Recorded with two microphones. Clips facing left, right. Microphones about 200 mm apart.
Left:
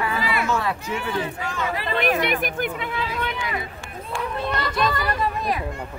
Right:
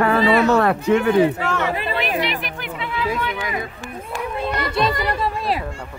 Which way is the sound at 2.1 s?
50° left (ahead or behind).